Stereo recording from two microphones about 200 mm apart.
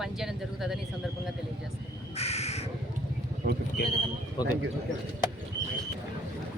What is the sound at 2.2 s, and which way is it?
Crow, 30° left (ahead or behind).